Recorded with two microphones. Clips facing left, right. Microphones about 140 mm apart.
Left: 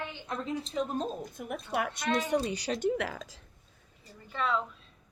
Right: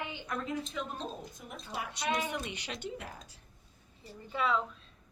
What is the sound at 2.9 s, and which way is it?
Speech, 85° left.